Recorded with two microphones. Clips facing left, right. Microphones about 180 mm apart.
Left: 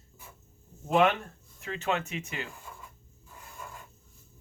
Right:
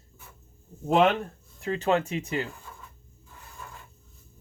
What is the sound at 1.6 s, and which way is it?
Speech, 35° right (ahead or behind).